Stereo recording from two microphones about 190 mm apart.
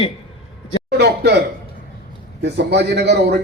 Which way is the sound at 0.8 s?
60° right (ahead or behind).